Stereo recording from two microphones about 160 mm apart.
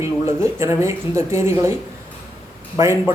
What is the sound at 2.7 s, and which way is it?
Speech, 15° right (ahead or behind).